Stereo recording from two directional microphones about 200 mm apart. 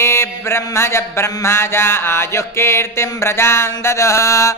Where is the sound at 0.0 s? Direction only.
15° left (ahead or behind).